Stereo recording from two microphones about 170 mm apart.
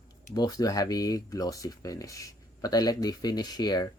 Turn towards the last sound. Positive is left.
turn(degrees=25)  # may be behind; listen again after turning